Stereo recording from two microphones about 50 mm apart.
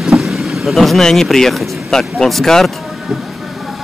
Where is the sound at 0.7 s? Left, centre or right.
Centre.